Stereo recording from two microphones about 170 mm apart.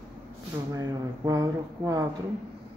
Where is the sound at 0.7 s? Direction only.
20° right (ahead or behind).